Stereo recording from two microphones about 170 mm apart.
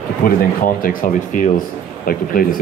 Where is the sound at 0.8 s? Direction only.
55° left (ahead or behind).